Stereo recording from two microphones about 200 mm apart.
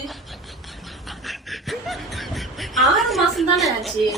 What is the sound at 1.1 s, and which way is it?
Chuckle, centre (ahead or behind).